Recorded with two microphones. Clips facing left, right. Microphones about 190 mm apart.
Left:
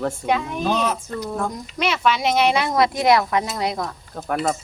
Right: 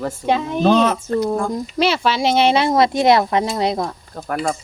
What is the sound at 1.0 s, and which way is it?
Speech, 45° right (ahead or behind).